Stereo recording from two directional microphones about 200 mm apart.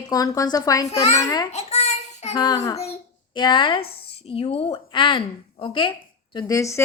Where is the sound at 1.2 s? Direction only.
20° left (ahead or behind).